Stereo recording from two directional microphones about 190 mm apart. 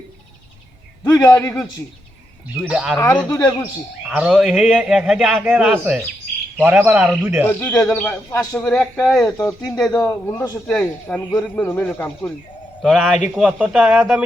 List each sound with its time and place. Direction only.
1.0 s speech: 20° left (ahead or behind)
2.6 s a man's voice: 5° right (ahead or behind)
3.0 s speech: 5° left (ahead or behind)
4.1 s a man's voice: 5° right (ahead or behind)
7.4 s speech: 10° left (ahead or behind)
9.2 s a man's voice: 15° left (ahead or behind)
12.8 s a man's voice: centre (ahead or behind)